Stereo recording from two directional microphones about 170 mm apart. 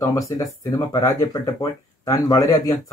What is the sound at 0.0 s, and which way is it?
Speech, 20° left (ahead or behind).